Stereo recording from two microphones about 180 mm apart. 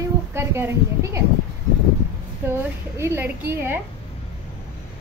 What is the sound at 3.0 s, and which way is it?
Speech, 15° right (ahead or behind).